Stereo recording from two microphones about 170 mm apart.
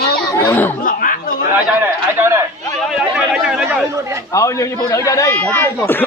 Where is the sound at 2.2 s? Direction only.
15° right (ahead or behind).